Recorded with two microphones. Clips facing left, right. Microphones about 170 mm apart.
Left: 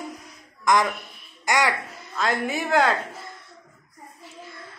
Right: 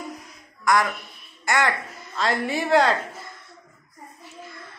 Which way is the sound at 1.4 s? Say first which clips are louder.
Even; 15° left (ahead or behind).